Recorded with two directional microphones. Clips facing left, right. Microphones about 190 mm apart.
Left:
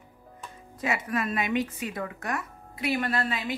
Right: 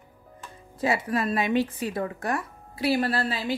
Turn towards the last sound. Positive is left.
turn(degrees=-30)  # may be behind; listen again after turning